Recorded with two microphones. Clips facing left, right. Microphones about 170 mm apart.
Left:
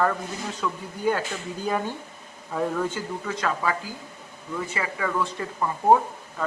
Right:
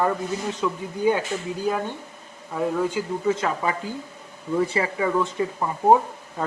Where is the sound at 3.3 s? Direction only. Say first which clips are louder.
Right 2 dB; 20° right (ahead or behind).